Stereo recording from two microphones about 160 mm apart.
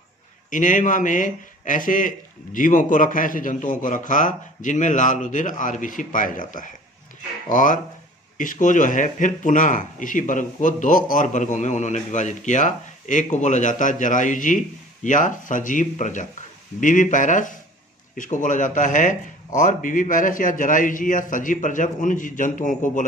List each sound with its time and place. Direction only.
0.5 s speech: 55° left (ahead or behind)